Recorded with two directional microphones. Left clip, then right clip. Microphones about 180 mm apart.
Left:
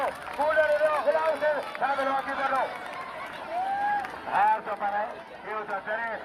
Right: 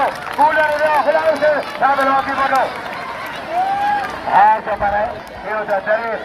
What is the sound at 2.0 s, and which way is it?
Speech, 15° left (ahead or behind).